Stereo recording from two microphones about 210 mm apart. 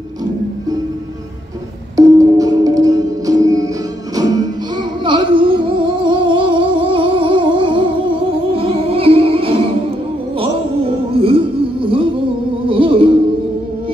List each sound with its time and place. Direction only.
2.0 s music: 15° right (ahead or behind)
5.0 s a sound: 20° right (ahead or behind)
11.1 s music: 25° right (ahead or behind)